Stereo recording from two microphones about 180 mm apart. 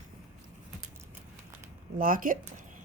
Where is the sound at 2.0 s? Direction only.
50° right (ahead or behind).